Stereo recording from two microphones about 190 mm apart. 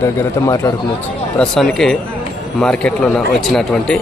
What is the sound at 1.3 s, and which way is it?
A man's voice, centre (ahead or behind).